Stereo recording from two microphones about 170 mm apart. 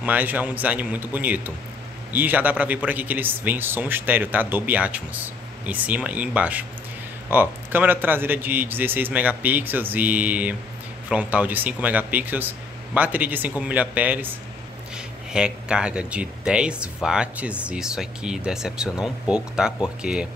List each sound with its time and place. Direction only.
0.0 s speech: 10° right (ahead or behind)